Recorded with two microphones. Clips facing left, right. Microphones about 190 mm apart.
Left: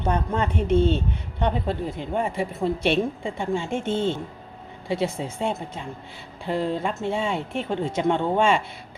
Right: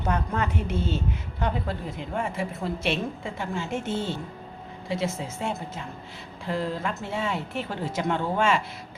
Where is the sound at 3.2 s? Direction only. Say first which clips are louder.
Left 5 dB; 30° left (ahead or behind).